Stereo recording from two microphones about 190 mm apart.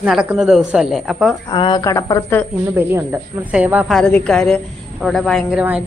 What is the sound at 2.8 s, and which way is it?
A woman's voice, 10° right (ahead or behind).